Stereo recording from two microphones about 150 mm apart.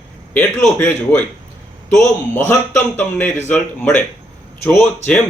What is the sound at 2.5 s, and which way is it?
A man's voice, 15° left (ahead or behind).